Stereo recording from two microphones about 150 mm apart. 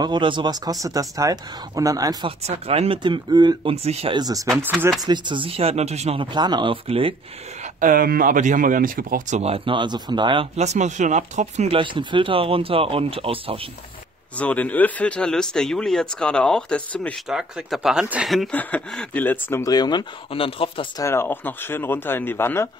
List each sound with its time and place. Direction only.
0.0 s speech: 30° right (ahead or behind)
2.2 s speech: 45° right (ahead or behind); by 3.7 s 30° right (ahead or behind)
3.7 s speech: 45° right (ahead or behind)
4.2 s speech: 25° right (ahead or behind); by 6.2 s 45° right (ahead or behind)
6.3 s speech: 30° right (ahead or behind)
7.8 s speech: 70° right (ahead or behind)
9.4 s speech: 35° right (ahead or behind)
14.3 s speech: 10° left (ahead or behind)
17.3 s speech: 5° right (ahead or behind); by 20.8 s 40° left (ahead or behind)
21.0 s speech: 15° left (ahead or behind)